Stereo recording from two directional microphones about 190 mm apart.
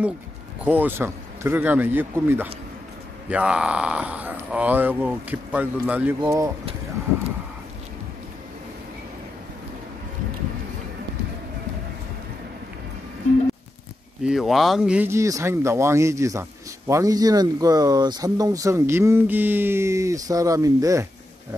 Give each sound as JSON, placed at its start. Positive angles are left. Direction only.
{"t": 0.7, "sound": "speech", "side_deg": -10}
{"t": 14.2, "sound": "speech", "side_deg": 0}